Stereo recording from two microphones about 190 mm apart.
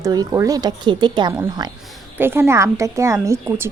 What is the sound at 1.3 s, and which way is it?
Speech, 10° right (ahead or behind).